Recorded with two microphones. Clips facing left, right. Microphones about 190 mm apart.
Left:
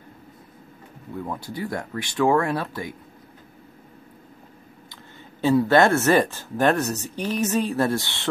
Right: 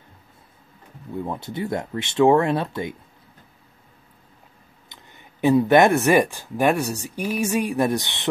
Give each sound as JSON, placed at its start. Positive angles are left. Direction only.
{"t": 1.1, "sound": "speech", "side_deg": -25}
{"t": 5.4, "sound": "speech", "side_deg": -15}